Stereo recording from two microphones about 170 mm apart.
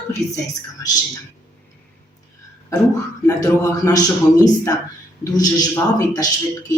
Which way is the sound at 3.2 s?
20° left (ahead or behind).